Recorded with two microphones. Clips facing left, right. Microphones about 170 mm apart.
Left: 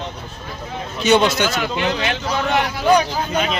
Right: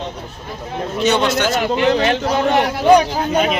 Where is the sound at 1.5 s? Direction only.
40° right (ahead or behind).